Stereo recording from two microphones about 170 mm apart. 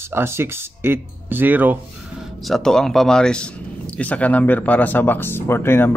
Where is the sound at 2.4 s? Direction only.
5° left (ahead or behind).